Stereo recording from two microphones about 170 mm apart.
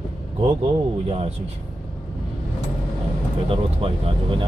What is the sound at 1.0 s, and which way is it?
Speech, 35° right (ahead or behind).